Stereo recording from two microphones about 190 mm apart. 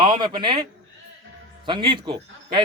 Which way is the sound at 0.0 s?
25° right (ahead or behind).